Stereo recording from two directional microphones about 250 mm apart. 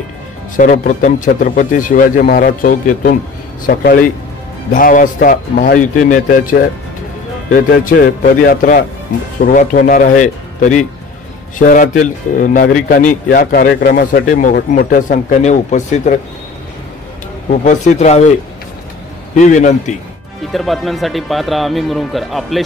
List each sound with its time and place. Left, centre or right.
0.6 s a man's voice: left
17.5 s speech: left
19.3 s speech: left
20.5 s speech: centre